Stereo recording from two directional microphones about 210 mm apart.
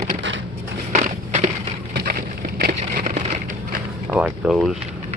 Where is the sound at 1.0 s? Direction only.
35° right (ahead or behind).